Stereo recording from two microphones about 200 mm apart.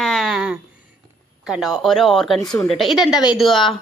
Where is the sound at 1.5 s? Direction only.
Centre (ahead or behind).